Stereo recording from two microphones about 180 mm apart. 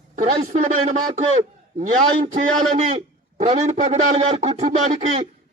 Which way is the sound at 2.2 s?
45° right (ahead or behind).